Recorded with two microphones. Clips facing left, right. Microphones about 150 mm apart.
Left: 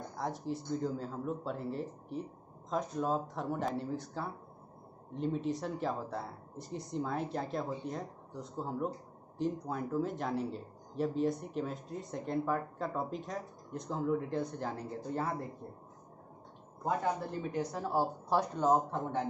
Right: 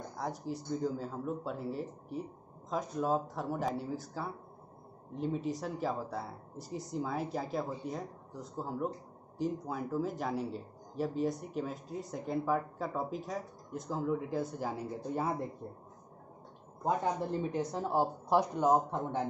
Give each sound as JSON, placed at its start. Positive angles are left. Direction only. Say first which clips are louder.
{"t": 0.2, "sound": "speech", "louder": "left 1 dB", "side_deg": 0}
{"t": 17.4, "sound": "speech", "louder": "right 2 dB", "side_deg": -25}